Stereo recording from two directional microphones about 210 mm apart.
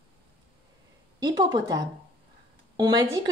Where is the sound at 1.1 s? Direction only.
20° right (ahead or behind).